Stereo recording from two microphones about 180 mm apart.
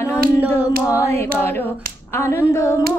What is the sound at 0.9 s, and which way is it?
Speech, 15° left (ahead or behind).